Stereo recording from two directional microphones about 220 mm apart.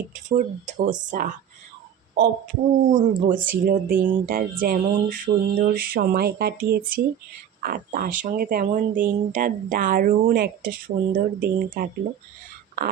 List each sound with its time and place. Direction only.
0.1 s speech: 35° right (ahead or behind)